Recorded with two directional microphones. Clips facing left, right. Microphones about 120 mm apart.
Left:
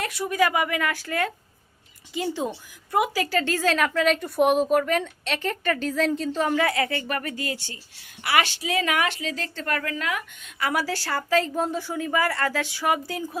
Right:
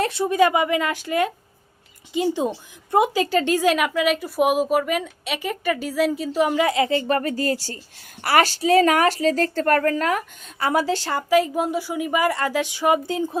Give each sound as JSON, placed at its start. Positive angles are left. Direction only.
{"t": 0.0, "sound": "a woman's voice", "side_deg": -25}